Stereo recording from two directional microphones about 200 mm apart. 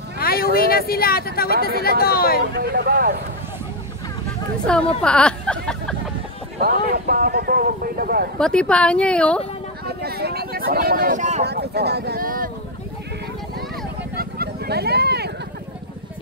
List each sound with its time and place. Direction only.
0.2 s vehicle: 50° left (ahead or behind)
0.6 s speech: 50° left (ahead or behind)
2.5 s speech: 55° right (ahead or behind)
4.6 s speech: 5° left (ahead or behind)
6.6 s speech: 50° right (ahead or behind)
8.4 s speech: 5° left (ahead or behind)
9.8 s speech: 50° right (ahead or behind)
11.4 s speech: 55° right (ahead or behind)
14.1 s vehicle: 50° right (ahead or behind)